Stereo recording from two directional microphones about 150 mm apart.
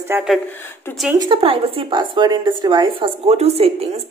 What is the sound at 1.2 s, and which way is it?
Speech, 35° right (ahead or behind).